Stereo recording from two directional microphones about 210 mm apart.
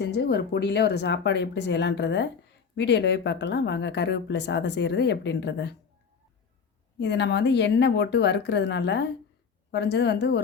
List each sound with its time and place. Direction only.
0.0 s speech: 55° left (ahead or behind)
7.0 s a woman's voice: 55° left (ahead or behind)